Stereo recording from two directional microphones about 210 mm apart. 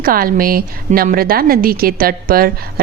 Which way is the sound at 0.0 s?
45° right (ahead or behind).